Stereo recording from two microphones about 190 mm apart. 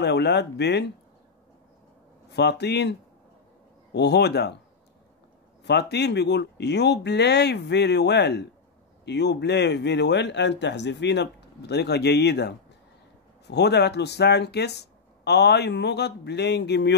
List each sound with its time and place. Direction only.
0.0 s a man's voice: 65° left (ahead or behind)
2.3 s a man's voice: 60° left (ahead or behind)
5.6 s a man's voice: 60° left (ahead or behind)